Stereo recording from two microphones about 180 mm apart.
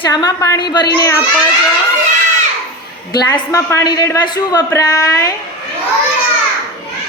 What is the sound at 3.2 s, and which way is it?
A man's voice, 20° left (ahead or behind).